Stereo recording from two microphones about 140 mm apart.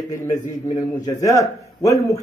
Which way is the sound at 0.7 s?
25° left (ahead or behind).